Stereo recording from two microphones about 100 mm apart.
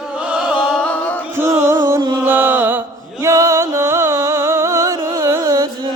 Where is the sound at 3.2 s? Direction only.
30° right (ahead or behind).